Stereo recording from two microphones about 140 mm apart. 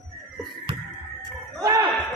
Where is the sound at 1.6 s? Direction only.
25° right (ahead or behind).